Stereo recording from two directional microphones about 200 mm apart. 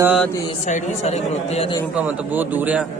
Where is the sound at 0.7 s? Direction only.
35° left (ahead or behind).